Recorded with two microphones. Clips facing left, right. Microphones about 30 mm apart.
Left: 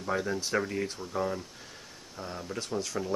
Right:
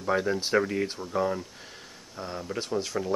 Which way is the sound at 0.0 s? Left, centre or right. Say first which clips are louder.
Right 4 dB; centre.